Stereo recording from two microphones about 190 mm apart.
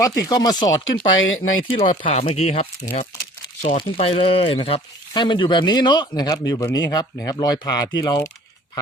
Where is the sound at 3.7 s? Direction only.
30° left (ahead or behind).